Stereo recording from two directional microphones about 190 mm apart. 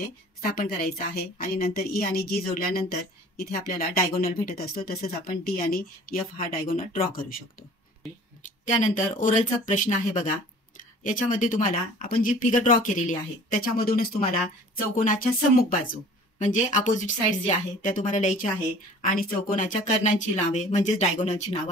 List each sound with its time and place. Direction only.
0.4 s a woman's voice: 50° left (ahead or behind)
8.4 s a woman's voice: 40° left (ahead or behind)
15.7 s a woman's voice: 45° left (ahead or behind)